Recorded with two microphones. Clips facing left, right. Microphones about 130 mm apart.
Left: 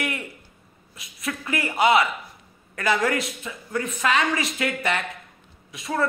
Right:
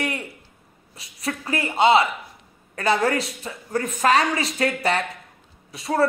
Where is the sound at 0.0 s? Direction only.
30° right (ahead or behind).